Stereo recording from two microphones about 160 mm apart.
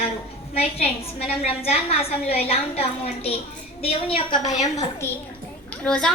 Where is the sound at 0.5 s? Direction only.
40° left (ahead or behind).